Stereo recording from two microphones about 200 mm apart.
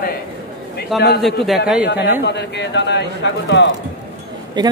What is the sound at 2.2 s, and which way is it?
Speech, 60° left (ahead or behind).